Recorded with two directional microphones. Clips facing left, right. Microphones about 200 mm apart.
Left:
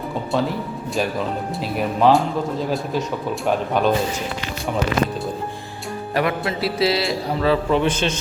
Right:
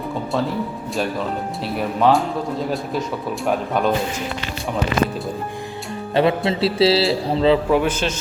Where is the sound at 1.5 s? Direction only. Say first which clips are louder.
Left 1 dB; centre (ahead or behind).